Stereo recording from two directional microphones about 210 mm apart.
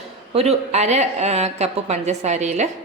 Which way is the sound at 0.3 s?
30° right (ahead or behind).